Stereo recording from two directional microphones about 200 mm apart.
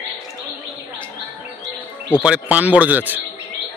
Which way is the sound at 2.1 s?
5° right (ahead or behind).